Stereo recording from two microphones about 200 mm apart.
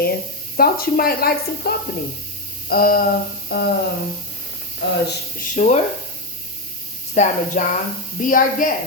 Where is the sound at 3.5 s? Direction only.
50° left (ahead or behind).